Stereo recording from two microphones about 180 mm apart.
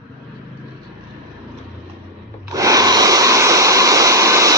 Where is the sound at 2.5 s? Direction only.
20° right (ahead or behind).